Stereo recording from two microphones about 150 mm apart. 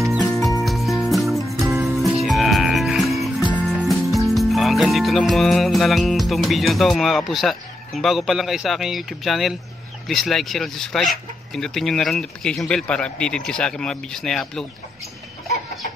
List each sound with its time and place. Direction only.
0.0 s music: centre (ahead or behind)
1.4 s music: 20° right (ahead or behind)
2.0 s music: 5° right (ahead or behind)
10.0 s speech: centre (ahead or behind)